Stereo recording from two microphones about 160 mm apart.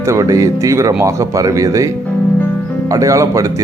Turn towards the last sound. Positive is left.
turn(degrees=-20)  # may be behind; listen again after turning